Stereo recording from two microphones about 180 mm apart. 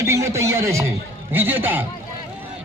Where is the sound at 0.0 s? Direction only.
15° right (ahead or behind).